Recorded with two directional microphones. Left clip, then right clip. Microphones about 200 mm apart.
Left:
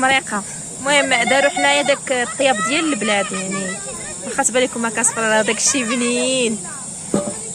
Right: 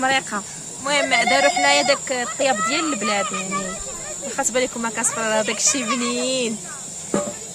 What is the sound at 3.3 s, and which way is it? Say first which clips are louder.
Speech: left 1 dB; 40° right (ahead or behind).